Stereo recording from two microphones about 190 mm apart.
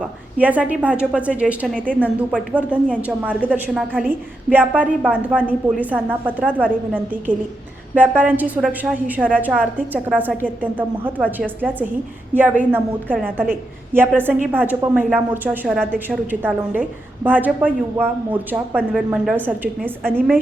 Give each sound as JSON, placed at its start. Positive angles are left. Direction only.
{"t": 0.3, "sound": "a woman's voice", "side_deg": -10}
{"t": 3.1, "sound": "a woman's voice", "side_deg": -10}
{"t": 16.0, "sound": "a woman's voice", "side_deg": -10}